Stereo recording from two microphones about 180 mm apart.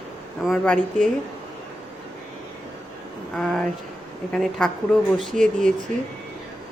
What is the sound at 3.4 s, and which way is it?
Speech, centre (ahead or behind).